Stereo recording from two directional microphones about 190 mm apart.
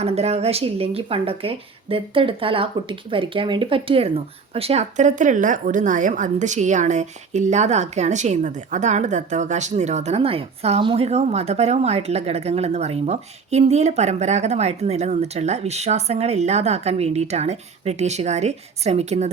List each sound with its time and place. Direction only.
0.0 s speech: 35° right (ahead or behind)